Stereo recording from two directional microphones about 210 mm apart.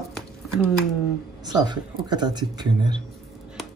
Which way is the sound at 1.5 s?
20° right (ahead or behind).